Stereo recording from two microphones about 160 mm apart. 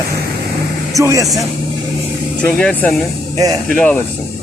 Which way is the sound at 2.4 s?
5° left (ahead or behind).